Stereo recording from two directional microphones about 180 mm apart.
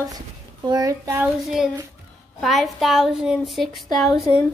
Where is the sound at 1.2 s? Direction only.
5° right (ahead or behind).